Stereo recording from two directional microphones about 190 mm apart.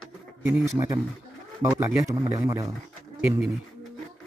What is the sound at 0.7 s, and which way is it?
Speech, 15° right (ahead or behind).